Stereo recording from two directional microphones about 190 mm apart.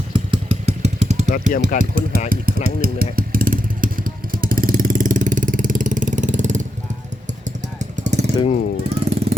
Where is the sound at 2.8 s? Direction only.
50° right (ahead or behind).